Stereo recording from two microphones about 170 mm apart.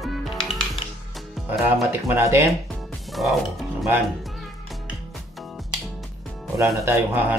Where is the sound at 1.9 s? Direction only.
15° right (ahead or behind).